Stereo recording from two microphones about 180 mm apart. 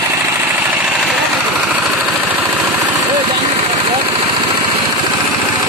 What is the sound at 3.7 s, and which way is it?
Vehicle, 30° right (ahead or behind).